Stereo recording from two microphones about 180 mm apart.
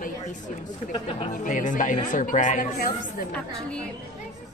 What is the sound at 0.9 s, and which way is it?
Speech, 30° left (ahead or behind).